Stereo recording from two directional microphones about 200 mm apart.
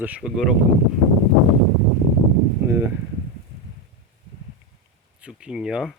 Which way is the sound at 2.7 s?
10° right (ahead or behind).